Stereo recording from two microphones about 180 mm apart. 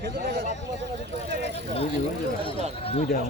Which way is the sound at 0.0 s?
55° right (ahead or behind).